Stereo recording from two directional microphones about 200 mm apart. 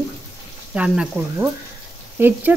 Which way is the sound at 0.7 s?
5° right (ahead or behind).